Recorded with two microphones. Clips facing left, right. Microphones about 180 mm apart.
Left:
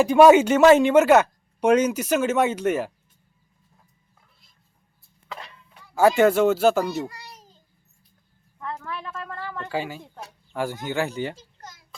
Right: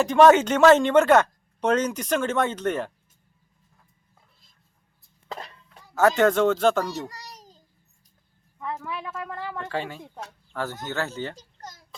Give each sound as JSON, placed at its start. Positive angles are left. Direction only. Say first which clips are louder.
{"t": 0.0, "sound": "speech", "louder": "left 2 dB", "side_deg": 10}
{"t": 5.3, "sound": "a sound", "louder": "right 2 dB", "side_deg": -40}
{"t": 5.9, "sound": "speech", "louder": "left 2 dB", "side_deg": 10}
{"t": 7.1, "sound": "a sound", "louder": "right 1 dB", "side_deg": -40}
{"t": 8.6, "sound": "a woman's voice", "louder": "right 1 dB", "side_deg": -10}
{"t": 9.6, "sound": "speech", "louder": "left 2 dB", "side_deg": 5}